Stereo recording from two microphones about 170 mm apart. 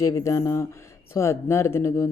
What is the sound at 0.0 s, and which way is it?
A woman's voice, 20° left (ahead or behind).